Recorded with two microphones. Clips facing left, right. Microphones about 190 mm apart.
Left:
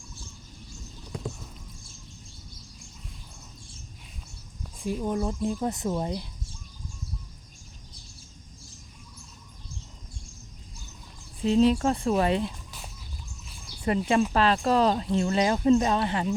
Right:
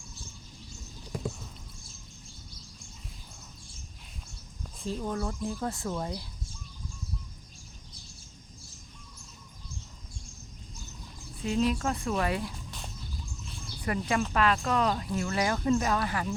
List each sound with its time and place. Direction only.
4.8 s speech: 10° left (ahead or behind)
11.4 s speech: 30° left (ahead or behind)
13.8 s speech: 25° left (ahead or behind)